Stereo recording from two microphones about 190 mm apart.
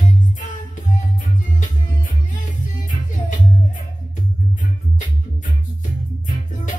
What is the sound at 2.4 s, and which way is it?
Music, 40° left (ahead or behind).